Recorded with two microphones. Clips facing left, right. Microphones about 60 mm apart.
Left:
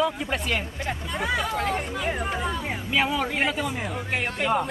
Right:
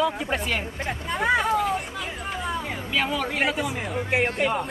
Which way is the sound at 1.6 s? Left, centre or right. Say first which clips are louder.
Even; left.